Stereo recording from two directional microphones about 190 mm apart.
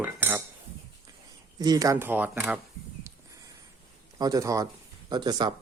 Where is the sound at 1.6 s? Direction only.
20° right (ahead or behind).